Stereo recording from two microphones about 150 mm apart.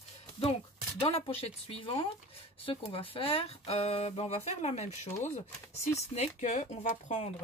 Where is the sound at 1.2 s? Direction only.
40° left (ahead or behind).